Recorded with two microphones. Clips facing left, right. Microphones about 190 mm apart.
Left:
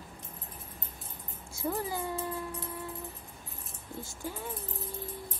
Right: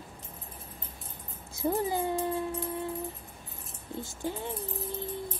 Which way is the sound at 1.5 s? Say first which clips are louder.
Right 5 dB; 20° right (ahead or behind).